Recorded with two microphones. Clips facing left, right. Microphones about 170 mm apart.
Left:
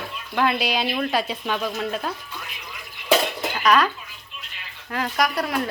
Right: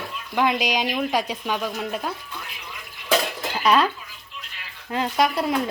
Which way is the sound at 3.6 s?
25° right (ahead or behind).